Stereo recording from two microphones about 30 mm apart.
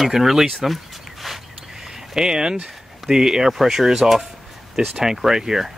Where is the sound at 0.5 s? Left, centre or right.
Centre.